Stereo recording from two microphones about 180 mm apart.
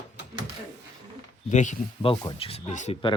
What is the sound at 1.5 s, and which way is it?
Speech, 40° left (ahead or behind).